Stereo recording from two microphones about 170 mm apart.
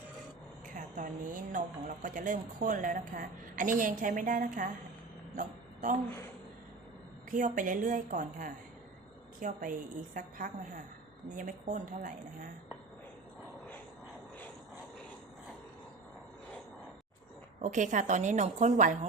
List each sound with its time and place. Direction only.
0.8 s speech: 50° right (ahead or behind)
5.3 s a sound: 50° right (ahead or behind)
7.3 s speech: 50° right (ahead or behind)
17.6 s speech: 45° right (ahead or behind)